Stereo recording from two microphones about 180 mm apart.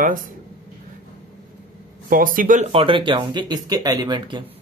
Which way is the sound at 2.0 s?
50° right (ahead or behind).